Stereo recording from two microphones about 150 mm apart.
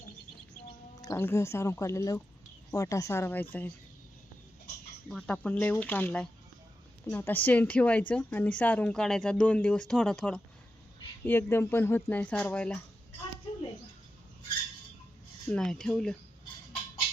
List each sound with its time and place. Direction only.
1.0 s speech: 15° left (ahead or behind)
5.0 s speech: 5° left (ahead or behind)
15.4 s speech: 5° left (ahead or behind)